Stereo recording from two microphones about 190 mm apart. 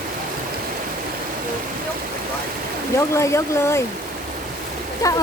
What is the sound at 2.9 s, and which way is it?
Speech, 15° left (ahead or behind).